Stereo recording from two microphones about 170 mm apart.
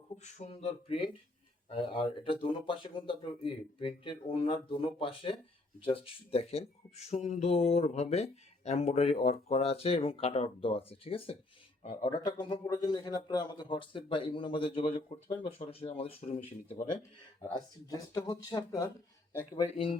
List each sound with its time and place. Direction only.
0.2 s a man's voice: 40° left (ahead or behind)
17.4 s a man's voice: 20° left (ahead or behind)
19.6 s speech: 35° left (ahead or behind)